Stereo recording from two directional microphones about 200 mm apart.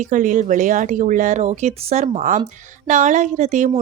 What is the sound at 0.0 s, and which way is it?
Speech, 40° right (ahead or behind).